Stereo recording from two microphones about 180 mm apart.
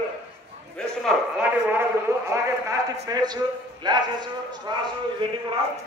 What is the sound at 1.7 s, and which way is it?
A man's voice, 15° right (ahead or behind).